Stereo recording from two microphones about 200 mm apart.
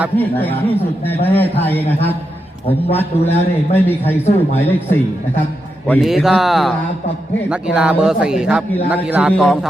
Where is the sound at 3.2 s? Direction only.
30° left (ahead or behind).